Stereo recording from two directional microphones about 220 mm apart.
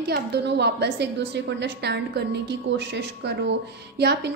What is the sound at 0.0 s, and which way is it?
A woman's voice, 50° right (ahead or behind).